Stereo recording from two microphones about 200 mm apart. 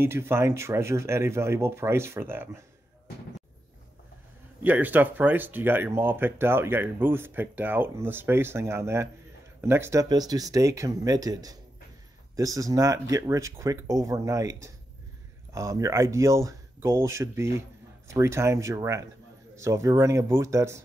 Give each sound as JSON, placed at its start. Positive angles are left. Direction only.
{"t": 0.0, "sound": "speech", "side_deg": -10}
{"t": 4.6, "sound": "speech", "side_deg": -10}
{"t": 15.5, "sound": "speech", "side_deg": -15}